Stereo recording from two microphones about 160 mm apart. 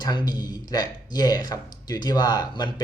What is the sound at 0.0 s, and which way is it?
Speech, 25° left (ahead or behind).